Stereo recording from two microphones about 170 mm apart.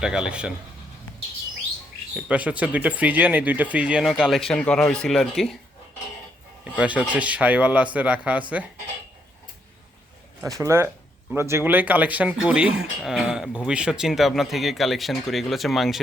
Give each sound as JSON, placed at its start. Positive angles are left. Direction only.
{"t": 0.0, "sound": "speech", "side_deg": -5}
{"t": 2.1, "sound": "speech", "side_deg": -5}
{"t": 6.7, "sound": "speech", "side_deg": -10}
{"t": 10.4, "sound": "speech", "side_deg": -15}